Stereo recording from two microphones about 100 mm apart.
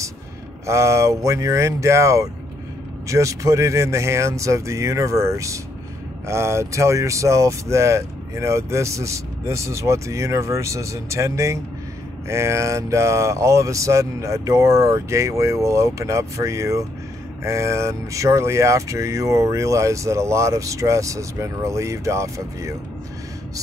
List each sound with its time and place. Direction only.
0.7 s speech: 30° right (ahead or behind)